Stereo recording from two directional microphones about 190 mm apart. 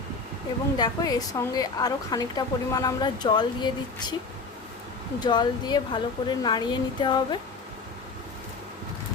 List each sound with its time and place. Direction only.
0.8 s a woman's voice: 20° left (ahead or behind)
5.2 s a woman's voice: 20° left (ahead or behind)